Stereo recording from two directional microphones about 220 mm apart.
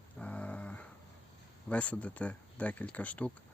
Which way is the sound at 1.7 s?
5° left (ahead or behind).